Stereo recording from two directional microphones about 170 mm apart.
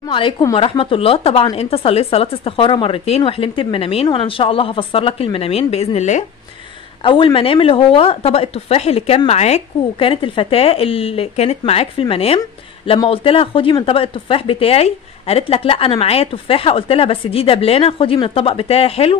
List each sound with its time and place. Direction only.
0.1 s speech: 25° left (ahead or behind); by 6.2 s 40° left (ahead or behind)
7.0 s speech: 30° left (ahead or behind)